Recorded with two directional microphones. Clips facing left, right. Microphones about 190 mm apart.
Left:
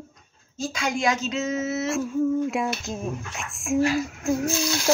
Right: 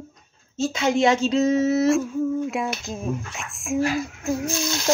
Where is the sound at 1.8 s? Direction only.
Centre (ahead or behind).